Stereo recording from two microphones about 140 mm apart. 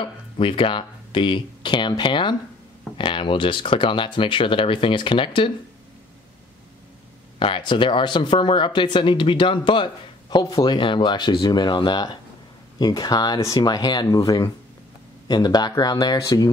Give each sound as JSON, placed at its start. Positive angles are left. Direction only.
{"t": 0.0, "sound": "speech", "side_deg": 40}
{"t": 7.3, "sound": "speech", "side_deg": 40}